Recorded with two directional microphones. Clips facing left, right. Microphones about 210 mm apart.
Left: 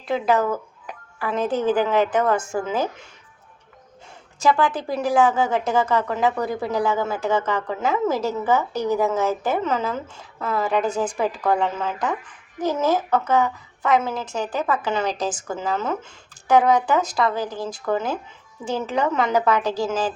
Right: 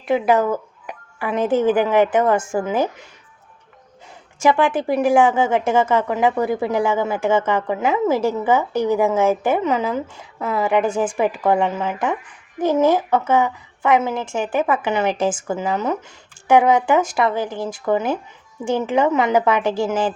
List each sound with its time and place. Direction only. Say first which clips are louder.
0.1 s a woman's voice: right 4 dB; 15° right (ahead or behind)
4.4 s a woman's voice: right 3 dB; 20° right (ahead or behind)